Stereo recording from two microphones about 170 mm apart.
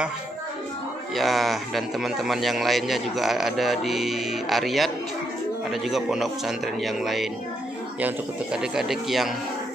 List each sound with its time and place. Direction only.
1.1 s a man's voice: centre (ahead or behind)